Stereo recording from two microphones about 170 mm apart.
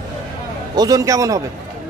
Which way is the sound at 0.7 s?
20° right (ahead or behind).